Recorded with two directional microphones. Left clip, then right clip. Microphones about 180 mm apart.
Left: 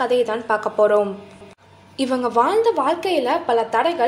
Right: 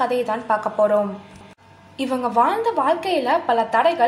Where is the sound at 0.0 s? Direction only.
35° left (ahead or behind).